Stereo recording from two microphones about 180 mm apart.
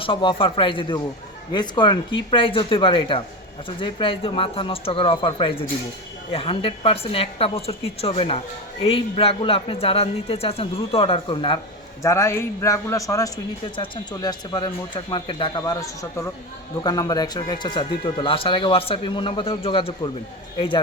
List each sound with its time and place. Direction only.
0.0 s a man's voice: 30° left (ahead or behind)
12.0 s a man's voice: 15° left (ahead or behind)